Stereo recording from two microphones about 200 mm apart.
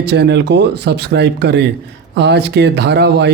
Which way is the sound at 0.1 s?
55° right (ahead or behind).